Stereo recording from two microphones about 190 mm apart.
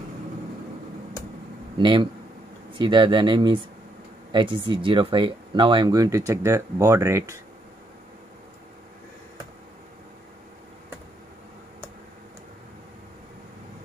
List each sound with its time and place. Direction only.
1.8 s speech: 25° right (ahead or behind)